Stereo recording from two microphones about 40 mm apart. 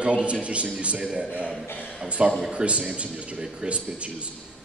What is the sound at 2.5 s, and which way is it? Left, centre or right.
Speech, right.